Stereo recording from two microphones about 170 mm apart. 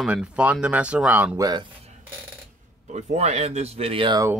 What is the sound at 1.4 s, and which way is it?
Speech, 25° right (ahead or behind).